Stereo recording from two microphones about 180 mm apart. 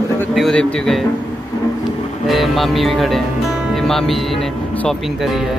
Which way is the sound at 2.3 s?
Centre (ahead or behind).